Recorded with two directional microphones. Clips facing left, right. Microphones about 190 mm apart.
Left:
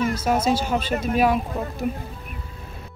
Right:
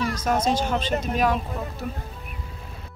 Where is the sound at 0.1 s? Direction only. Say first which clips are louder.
Left 2 dB; 5° left (ahead or behind).